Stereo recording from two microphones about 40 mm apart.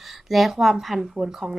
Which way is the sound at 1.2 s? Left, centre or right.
Centre.